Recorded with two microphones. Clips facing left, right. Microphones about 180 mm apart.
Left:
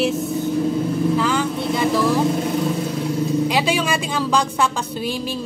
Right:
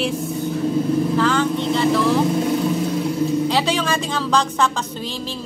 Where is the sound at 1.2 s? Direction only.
10° left (ahead or behind).